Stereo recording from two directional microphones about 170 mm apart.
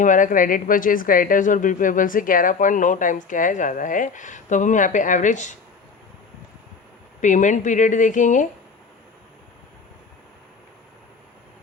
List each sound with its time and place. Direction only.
0.0 s speech: 50° left (ahead or behind)
7.2 s speech: 45° left (ahead or behind)